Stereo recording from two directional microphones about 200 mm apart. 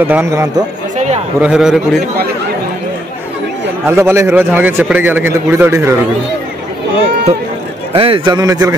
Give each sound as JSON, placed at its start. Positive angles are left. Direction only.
{"t": 0.0, "sound": "a man's voice", "side_deg": -10}
{"t": 0.9, "sound": "a sound", "side_deg": -35}
{"t": 1.4, "sound": "a man's voice", "side_deg": -5}
{"t": 3.8, "sound": "a man's voice", "side_deg": -10}
{"t": 7.9, "sound": "a man's voice", "side_deg": -25}